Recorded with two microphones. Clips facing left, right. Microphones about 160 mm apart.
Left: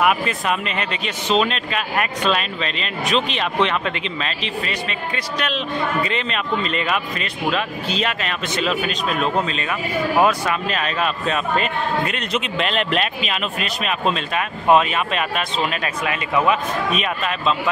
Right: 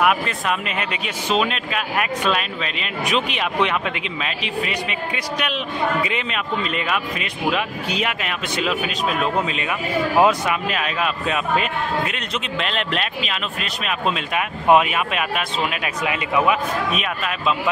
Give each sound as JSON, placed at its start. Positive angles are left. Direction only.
{"t": 0.0, "sound": "speech", "side_deg": 0}
{"t": 10.7, "sound": "speech", "side_deg": -5}
{"t": 14.3, "sound": "speech", "side_deg": -10}